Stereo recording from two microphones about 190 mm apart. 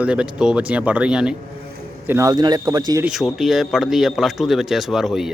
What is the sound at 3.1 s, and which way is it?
Speech, centre (ahead or behind).